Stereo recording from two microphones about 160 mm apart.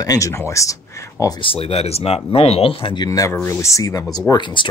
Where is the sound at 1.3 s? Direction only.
35° left (ahead or behind).